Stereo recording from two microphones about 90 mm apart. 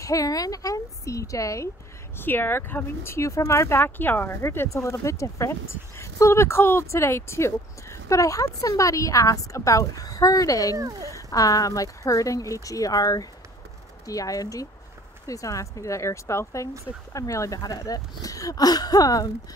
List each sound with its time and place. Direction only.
0.0 s a woman's voice: 40° left (ahead or behind)
2.1 s speech: 25° left (ahead or behind); by 10.8 s 40° left (ahead or behind)
10.8 s speech: 40° right (ahead or behind)
11.1 s speech: 40° left (ahead or behind)